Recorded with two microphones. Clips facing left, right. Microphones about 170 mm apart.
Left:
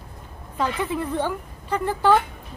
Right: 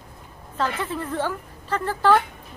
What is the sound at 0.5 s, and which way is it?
A woman's voice, 15° left (ahead or behind).